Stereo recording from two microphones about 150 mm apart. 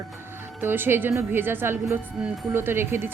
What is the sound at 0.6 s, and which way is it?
A woman's voice, 15° right (ahead or behind).